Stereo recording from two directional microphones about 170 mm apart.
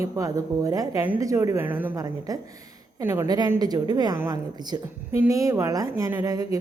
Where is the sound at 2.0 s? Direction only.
20° right (ahead or behind).